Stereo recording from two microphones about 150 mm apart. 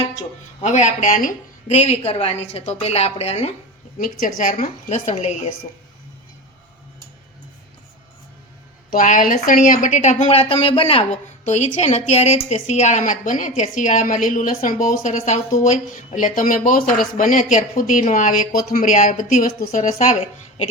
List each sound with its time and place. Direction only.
0.6 s speech: 50° left (ahead or behind)
3.9 s speech: 65° left (ahead or behind); by 5.3 s 45° left (ahead or behind)
8.9 s a woman's voice: 60° left (ahead or behind); by 19.8 s 75° left (ahead or behind)
19.8 s speech: 55° left (ahead or behind)